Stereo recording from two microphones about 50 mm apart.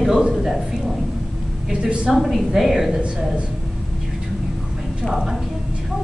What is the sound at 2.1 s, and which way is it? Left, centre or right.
Speech, centre.